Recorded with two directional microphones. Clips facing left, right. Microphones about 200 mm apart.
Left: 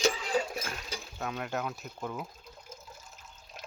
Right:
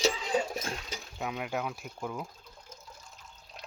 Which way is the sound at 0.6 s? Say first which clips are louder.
Right 1 dB; 20° right (ahead or behind).